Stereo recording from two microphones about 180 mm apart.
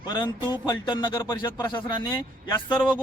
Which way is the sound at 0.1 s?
25° left (ahead or behind).